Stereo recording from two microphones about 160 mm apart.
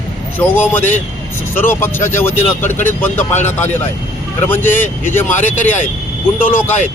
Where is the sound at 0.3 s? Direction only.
10° left (ahead or behind).